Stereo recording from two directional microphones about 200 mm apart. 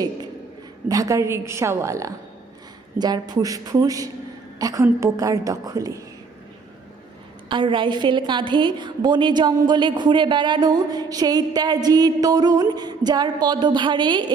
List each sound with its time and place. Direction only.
0.8 s a woman's voice: 15° right (ahead or behind)
7.4 s a woman's voice: 25° right (ahead or behind)